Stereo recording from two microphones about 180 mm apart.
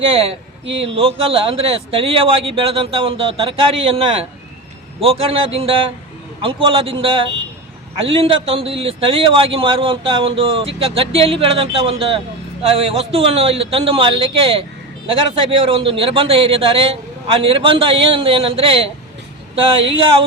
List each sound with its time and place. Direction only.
0.1 s speech: 30° right (ahead or behind)
0.6 s speech: 90° right
0.9 s speech: 30° right (ahead or behind)